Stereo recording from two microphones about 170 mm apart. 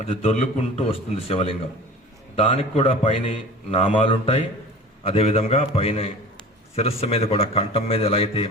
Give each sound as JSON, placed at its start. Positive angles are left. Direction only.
{"t": 0.0, "sound": "a man's voice", "side_deg": 35}